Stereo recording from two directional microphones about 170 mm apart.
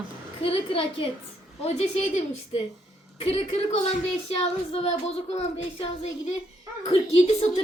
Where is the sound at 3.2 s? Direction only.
35° left (ahead or behind).